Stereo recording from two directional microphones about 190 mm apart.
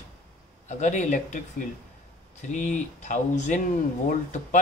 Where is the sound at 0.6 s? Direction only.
40° left (ahead or behind).